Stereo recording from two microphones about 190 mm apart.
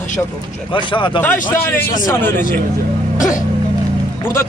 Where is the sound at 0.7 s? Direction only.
25° left (ahead or behind).